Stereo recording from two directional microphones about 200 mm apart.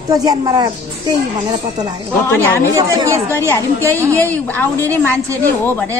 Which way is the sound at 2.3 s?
10° left (ahead or behind).